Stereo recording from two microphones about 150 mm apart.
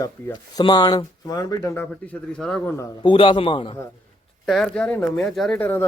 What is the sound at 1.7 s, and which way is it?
A man's voice, 10° left (ahead or behind).